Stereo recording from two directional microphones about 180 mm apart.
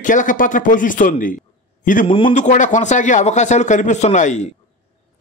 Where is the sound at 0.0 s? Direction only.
45° left (ahead or behind).